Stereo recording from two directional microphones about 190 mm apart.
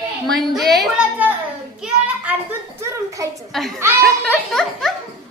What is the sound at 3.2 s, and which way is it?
Speech, 15° right (ahead or behind).